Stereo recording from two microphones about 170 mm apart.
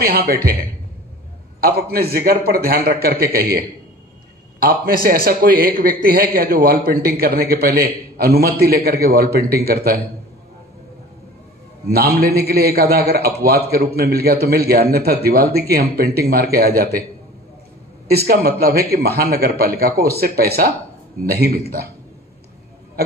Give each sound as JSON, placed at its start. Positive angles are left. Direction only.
{"t": 0.0, "sound": "a man's voice", "side_deg": -65}
{"t": 11.9, "sound": "a man's voice", "side_deg": -65}
{"t": 18.0, "sound": "a man's voice", "side_deg": -65}